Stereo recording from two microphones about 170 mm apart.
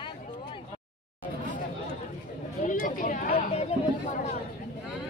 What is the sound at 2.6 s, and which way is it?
Chatter, 50° left (ahead or behind).